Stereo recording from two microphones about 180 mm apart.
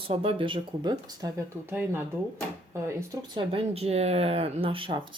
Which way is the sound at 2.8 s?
20° right (ahead or behind).